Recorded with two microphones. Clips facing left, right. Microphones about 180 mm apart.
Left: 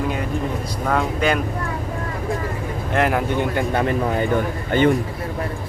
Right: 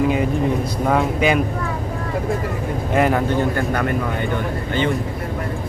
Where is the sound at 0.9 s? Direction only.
5° right (ahead or behind).